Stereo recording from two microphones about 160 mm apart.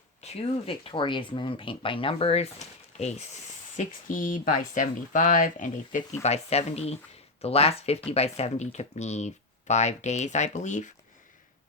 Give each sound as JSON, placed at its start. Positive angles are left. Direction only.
{"t": 0.2, "sound": "speech", "side_deg": 40}
{"t": 3.8, "sound": "speech", "side_deg": 55}
{"t": 6.2, "sound": "speech", "side_deg": 40}